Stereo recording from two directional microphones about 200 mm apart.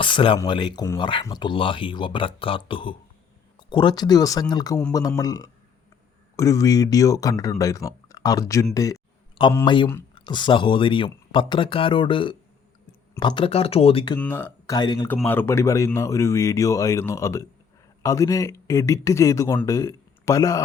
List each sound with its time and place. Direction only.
0.0 s speech: 25° left (ahead or behind)
14.2 s speech: 10° left (ahead or behind)
14.8 s speech: 20° left (ahead or behind)
15.0 s speech: 10° left (ahead or behind)